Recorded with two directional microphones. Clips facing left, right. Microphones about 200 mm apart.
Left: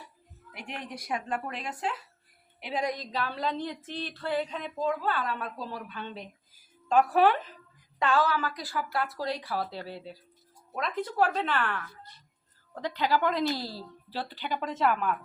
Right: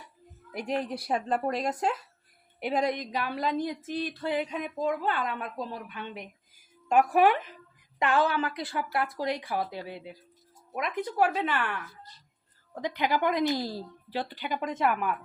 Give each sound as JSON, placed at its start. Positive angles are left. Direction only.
{"t": 0.5, "sound": "speech", "side_deg": -35}
{"t": 3.0, "sound": "a woman's voice", "side_deg": -15}